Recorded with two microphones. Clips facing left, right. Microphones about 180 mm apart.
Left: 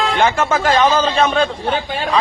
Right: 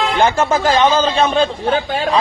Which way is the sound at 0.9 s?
30° right (ahead or behind).